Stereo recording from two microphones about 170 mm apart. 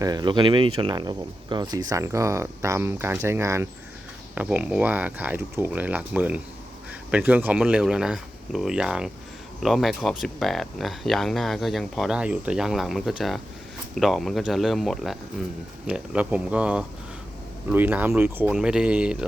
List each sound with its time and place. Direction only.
0.0 s speech: 25° right (ahead or behind); by 19.1 s 5° right (ahead or behind)